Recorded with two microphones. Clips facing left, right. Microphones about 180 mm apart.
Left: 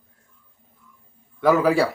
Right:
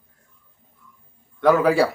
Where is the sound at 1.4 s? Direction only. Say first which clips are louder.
Right 1 dB; centre (ahead or behind).